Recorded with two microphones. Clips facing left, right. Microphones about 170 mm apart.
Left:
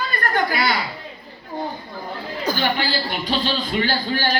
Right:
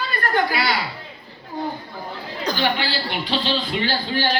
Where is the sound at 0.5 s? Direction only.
50° left (ahead or behind).